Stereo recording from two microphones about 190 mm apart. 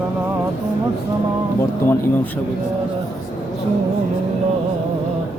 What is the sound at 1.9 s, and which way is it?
Speech, 10° left (ahead or behind).